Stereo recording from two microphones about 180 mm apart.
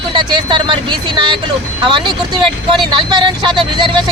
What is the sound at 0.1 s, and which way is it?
Speech, 25° right (ahead or behind).